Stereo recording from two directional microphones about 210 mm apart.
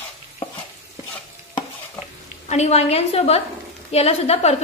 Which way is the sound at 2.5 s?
30° left (ahead or behind).